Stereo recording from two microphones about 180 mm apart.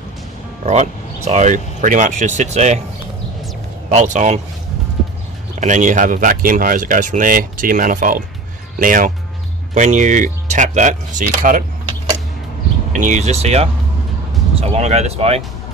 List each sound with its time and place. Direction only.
0.7 s speech: 40° right (ahead or behind)
3.9 s speech: 40° right (ahead or behind)
5.6 s speech: 45° right (ahead or behind)
12.9 s speech: 45° right (ahead or behind)